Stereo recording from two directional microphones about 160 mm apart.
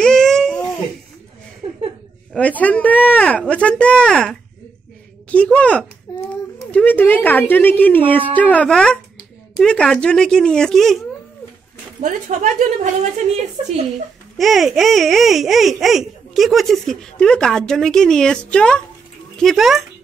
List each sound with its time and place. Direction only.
0.0 s a sound: 5° left (ahead or behind)
1.6 s laughter: 30° right (ahead or behind)
2.3 s a woman's voice: 10° left (ahead or behind)
12.0 s a woman's voice: 50° right (ahead or behind)
14.4 s speech: centre (ahead or behind)